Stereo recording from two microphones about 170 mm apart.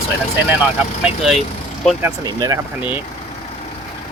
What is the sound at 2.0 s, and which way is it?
Speech, 15° right (ahead or behind).